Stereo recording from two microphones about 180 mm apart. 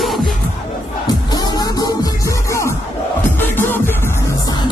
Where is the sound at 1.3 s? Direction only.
20° left (ahead or behind).